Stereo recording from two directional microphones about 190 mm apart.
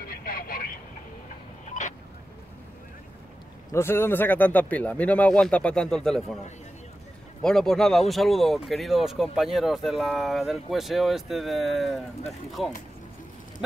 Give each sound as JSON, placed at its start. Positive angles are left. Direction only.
{"t": 0.1, "sound": "vehicle", "side_deg": 50}
{"t": 1.7, "sound": "vehicle", "side_deg": 40}
{"t": 3.7, "sound": "speech", "side_deg": 15}
{"t": 7.4, "sound": "speech", "side_deg": 5}